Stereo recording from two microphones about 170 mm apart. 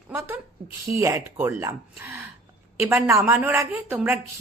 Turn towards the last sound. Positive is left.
turn(degrees=-10)  # may be behind; listen again after turning